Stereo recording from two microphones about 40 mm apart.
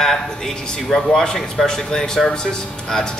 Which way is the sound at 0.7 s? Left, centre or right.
Centre.